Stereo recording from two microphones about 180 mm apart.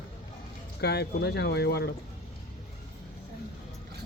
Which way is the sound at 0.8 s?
65° left (ahead or behind).